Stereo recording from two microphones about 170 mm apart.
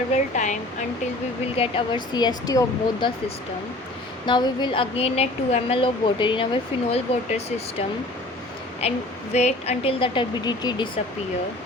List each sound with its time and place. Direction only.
0.1 s speech: 45° left (ahead or behind)
1.5 s speech: 35° left (ahead or behind)
4.3 s speech: 25° left (ahead or behind)